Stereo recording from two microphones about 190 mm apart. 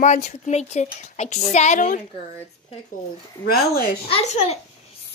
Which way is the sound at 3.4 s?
50° left (ahead or behind).